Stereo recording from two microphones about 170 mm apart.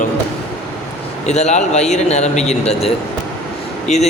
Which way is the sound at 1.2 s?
40° left (ahead or behind).